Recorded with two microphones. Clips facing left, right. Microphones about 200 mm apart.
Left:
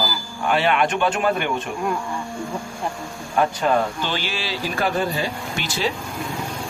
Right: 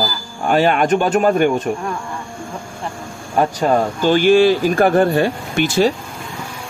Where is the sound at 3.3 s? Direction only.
40° right (ahead or behind).